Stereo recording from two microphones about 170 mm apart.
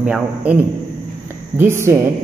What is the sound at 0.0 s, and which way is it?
Speech, 10° right (ahead or behind).